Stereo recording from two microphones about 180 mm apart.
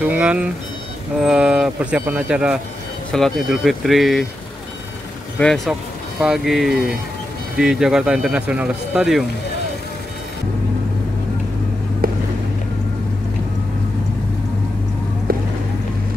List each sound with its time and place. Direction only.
0.1 s speech: 5° right (ahead or behind)
5.4 s speech: centre (ahead or behind)
12.0 s vehicle: 55° right (ahead or behind)
15.3 s a sound: 55° right (ahead or behind)